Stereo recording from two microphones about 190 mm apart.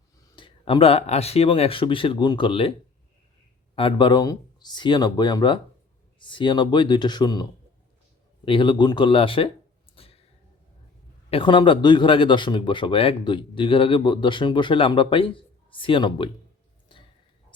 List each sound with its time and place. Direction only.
0.3 s speech: 25° left (ahead or behind)
3.8 s speech: 25° left (ahead or behind)
8.4 s speech: 25° left (ahead or behind)
9.9 s a sound: 30° left (ahead or behind)
11.3 s speech: 25° left (ahead or behind)